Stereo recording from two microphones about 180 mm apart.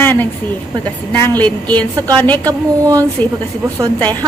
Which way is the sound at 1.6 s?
10° left (ahead or behind).